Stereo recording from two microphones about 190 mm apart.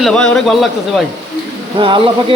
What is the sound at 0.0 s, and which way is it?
Speech, 5° left (ahead or behind).